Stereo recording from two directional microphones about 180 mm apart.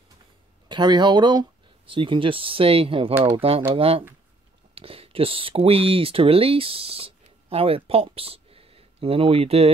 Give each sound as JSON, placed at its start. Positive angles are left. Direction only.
{"t": 0.7, "sound": "speech", "side_deg": -25}